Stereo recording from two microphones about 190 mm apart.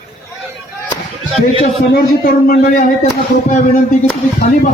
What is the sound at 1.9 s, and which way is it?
Speech, 50° left (ahead or behind).